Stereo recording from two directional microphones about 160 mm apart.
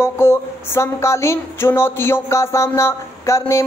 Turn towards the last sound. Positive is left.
turn(degrees=20)  # may be behind; listen again after turning